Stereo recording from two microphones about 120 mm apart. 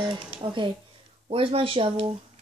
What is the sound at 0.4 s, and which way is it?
Speech, 45° right (ahead or behind).